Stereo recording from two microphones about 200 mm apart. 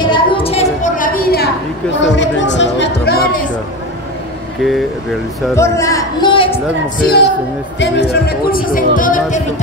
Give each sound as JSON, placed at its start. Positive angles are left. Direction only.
{"t": 0.0, "sound": "a sound", "side_deg": 25}
{"t": 2.0, "sound": "music", "side_deg": 65}
{"t": 5.5, "sound": "a man's voice", "side_deg": 15}
{"t": 7.0, "sound": "speech", "side_deg": 50}